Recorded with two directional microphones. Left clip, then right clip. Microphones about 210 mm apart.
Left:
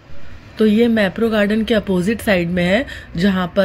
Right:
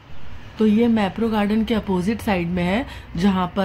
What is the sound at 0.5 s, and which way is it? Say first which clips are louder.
A woman's voice: left 5 dB; 10° left (ahead or behind).